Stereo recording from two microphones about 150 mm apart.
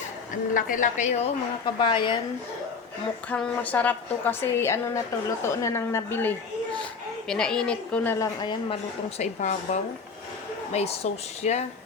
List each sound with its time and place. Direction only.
0.5 s speech: 60° left (ahead or behind)
1.6 s speech: 35° left (ahead or behind)
3.2 s a woman's voice: 5° left (ahead or behind)
7.3 s a woman's voice: 5° left (ahead or behind)
8.4 s speech: 30° left (ahead or behind)
9.1 s speech: 50° left (ahead or behind)